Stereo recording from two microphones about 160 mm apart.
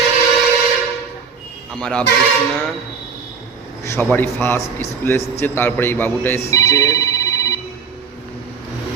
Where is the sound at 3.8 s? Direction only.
15° left (ahead or behind).